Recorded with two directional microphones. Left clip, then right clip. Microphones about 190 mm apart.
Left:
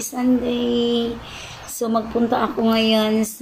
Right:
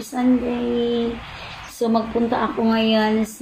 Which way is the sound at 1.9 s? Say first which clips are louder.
Left 1 dB; 10° left (ahead or behind).